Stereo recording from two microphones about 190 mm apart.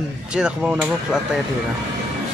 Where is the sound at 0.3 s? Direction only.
5° right (ahead or behind).